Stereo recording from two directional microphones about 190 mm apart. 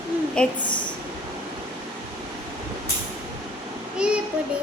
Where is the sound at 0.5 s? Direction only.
25° left (ahead or behind).